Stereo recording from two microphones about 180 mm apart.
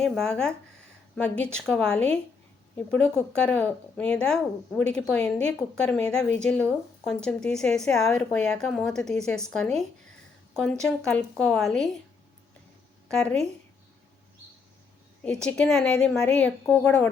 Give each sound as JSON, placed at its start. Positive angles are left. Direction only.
{"t": 0.0, "sound": "a woman's voice", "side_deg": 5}
{"t": 10.8, "sound": "speech", "side_deg": 5}
{"t": 13.1, "sound": "speech", "side_deg": 5}
{"t": 15.2, "sound": "speech", "side_deg": 5}